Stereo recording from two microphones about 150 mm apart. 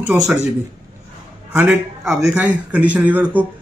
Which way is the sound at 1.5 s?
15° right (ahead or behind).